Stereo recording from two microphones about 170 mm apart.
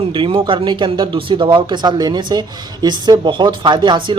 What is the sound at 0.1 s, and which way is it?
Speech, 30° right (ahead or behind).